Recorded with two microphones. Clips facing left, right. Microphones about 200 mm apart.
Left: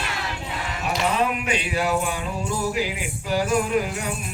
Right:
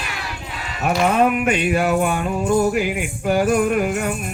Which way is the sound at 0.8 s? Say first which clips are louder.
Right 7 dB; 55° right (ahead or behind).